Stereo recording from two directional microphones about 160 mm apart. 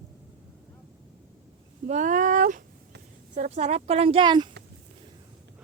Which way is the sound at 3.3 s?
45° right (ahead or behind).